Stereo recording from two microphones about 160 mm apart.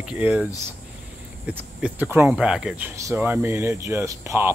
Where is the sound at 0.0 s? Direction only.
5° right (ahead or behind).